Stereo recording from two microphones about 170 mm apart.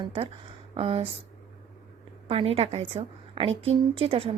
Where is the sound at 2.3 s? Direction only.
35° right (ahead or behind).